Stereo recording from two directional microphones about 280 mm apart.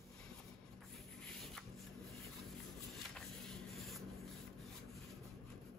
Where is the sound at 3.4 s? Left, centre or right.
Centre.